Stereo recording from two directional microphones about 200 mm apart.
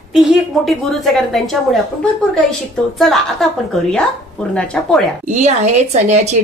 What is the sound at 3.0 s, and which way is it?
A woman's voice, centre (ahead or behind).